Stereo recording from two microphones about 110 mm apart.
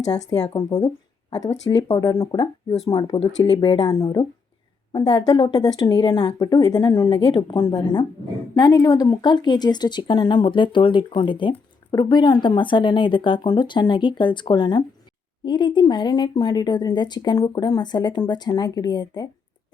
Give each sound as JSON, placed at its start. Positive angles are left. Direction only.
{"t": 0.1, "sound": "speech", "side_deg": 40}
{"t": 1.7, "sound": "speech", "side_deg": 40}
{"t": 2.9, "sound": "speech", "side_deg": 60}
{"t": 3.4, "sound": "speech", "side_deg": 45}
{"t": 3.9, "sound": "speech", "side_deg": 30}
{"t": 4.9, "sound": "speech", "side_deg": 40}